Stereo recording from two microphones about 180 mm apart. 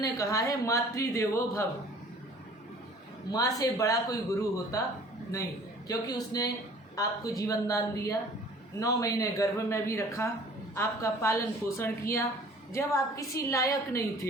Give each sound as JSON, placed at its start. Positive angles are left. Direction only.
{"t": 0.0, "sound": "speech", "side_deg": 20}
{"t": 3.3, "sound": "a man's voice", "side_deg": 20}
{"t": 5.9, "sound": "a man's voice", "side_deg": 20}